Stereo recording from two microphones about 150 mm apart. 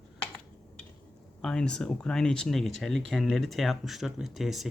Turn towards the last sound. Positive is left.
turn(degrees=0)  # may be behind; listen again after turning